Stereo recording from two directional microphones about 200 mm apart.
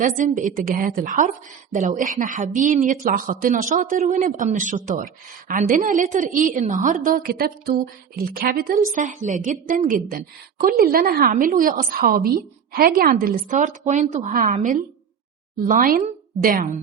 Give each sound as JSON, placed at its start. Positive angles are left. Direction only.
{"t": 0.0, "sound": "a woman's voice", "side_deg": -40}